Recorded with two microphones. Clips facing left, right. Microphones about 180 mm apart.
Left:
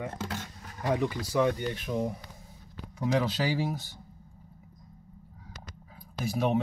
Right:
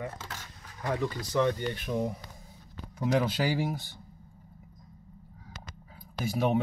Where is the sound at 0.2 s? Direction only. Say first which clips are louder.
Left 8 dB; 55° left (ahead or behind).